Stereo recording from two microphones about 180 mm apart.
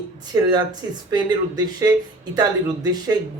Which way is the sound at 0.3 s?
20° right (ahead or behind).